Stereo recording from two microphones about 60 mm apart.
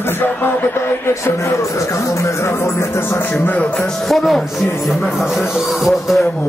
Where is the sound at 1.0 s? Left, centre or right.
Left.